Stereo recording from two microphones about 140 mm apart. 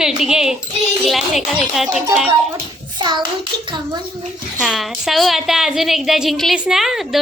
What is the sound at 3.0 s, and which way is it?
Speech, 35° right (ahead or behind).